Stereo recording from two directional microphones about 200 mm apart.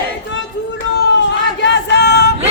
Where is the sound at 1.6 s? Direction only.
60° left (ahead or behind).